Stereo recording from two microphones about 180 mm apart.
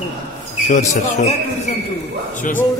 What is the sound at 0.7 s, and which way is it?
Speech, 40° left (ahead or behind).